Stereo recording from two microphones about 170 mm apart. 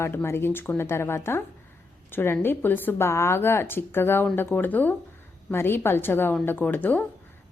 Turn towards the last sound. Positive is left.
turn(degrees=10)  # may be behind; listen again after turning